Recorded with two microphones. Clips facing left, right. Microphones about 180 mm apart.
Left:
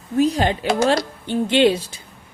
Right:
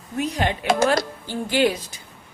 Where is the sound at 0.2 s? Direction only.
30° left (ahead or behind).